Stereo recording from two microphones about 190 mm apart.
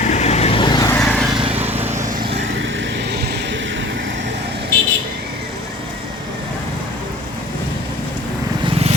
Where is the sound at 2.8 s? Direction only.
60° right (ahead or behind).